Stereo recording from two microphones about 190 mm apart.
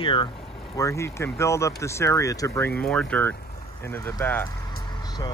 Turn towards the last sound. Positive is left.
turn(degrees=10)  # may be behind; listen again after turning